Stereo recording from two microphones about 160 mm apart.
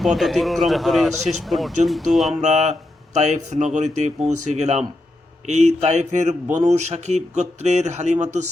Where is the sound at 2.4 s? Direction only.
45° right (ahead or behind).